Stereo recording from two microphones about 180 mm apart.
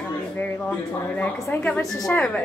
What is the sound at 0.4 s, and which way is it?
A woman's voice, 10° left (ahead or behind).